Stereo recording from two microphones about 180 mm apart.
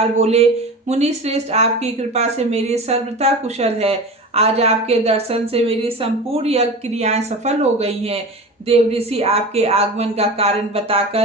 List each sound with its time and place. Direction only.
0.2 s a woman's voice: 35° right (ahead or behind)